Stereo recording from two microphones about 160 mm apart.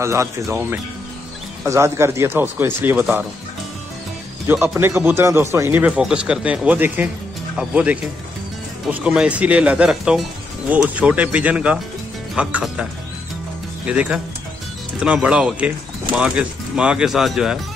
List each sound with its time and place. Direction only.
0.0 s speech: 20° right (ahead or behind)
4.7 s speech: 15° right (ahead or behind)
13.8 s speech: 5° right (ahead or behind)